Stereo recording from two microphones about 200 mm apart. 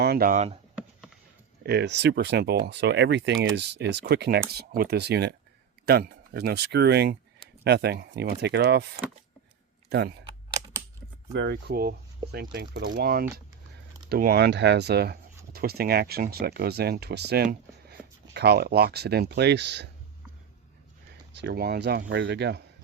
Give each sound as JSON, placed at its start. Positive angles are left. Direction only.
{"t": 0.0, "sound": "speech", "side_deg": -50}
{"t": 1.6, "sound": "speech", "side_deg": -55}
{"t": 11.3, "sound": "speech", "side_deg": -55}
{"t": 21.3, "sound": "speech", "side_deg": -55}